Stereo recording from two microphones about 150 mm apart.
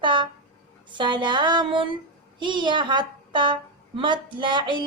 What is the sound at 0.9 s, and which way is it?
Female singing, 30° right (ahead or behind).